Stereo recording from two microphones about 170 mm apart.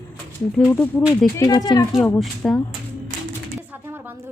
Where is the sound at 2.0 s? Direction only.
5° left (ahead or behind).